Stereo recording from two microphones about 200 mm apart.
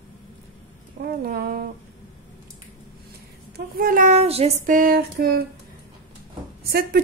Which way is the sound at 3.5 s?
50° right (ahead or behind).